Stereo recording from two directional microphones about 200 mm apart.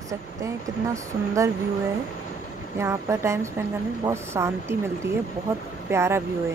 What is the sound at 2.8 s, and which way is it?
Speech, 15° right (ahead or behind).